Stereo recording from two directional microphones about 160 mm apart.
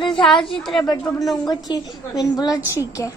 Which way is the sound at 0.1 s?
Centre (ahead or behind).